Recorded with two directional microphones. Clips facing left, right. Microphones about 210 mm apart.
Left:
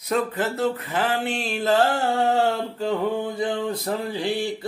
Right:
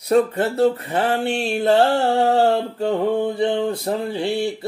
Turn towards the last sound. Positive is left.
turn(degrees=-30)  # may be behind; listen again after turning